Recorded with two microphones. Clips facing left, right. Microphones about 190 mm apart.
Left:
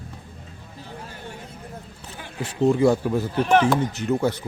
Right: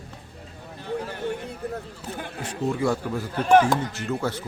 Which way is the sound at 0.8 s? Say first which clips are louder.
Right 9 dB; 65° right (ahead or behind).